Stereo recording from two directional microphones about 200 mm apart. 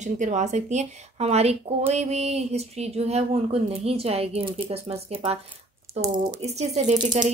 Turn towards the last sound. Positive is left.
turn(degrees=-40)  # may be behind; listen again after turning